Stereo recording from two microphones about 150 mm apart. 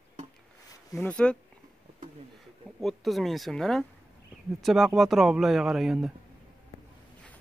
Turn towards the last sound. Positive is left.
turn(degrees=0)  # may be behind; listen again after turning